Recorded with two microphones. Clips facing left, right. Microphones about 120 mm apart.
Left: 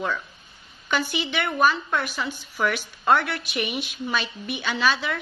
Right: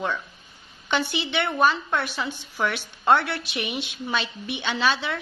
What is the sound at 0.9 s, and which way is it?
A woman's voice, 30° right (ahead or behind).